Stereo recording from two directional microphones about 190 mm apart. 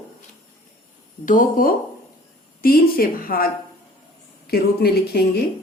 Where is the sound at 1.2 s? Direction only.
45° left (ahead or behind).